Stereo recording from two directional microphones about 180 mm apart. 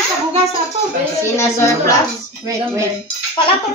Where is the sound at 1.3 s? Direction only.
15° left (ahead or behind).